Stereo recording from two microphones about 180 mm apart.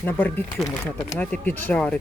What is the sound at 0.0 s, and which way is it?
Speech, 10° left (ahead or behind).